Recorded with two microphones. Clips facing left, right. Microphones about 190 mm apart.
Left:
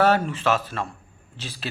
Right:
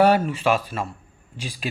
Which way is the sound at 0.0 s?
10° right (ahead or behind).